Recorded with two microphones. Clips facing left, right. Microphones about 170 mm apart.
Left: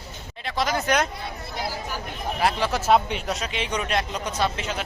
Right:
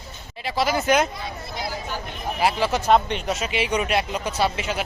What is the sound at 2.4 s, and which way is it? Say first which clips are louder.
A man's voice: right 2 dB; 5° right (ahead or behind).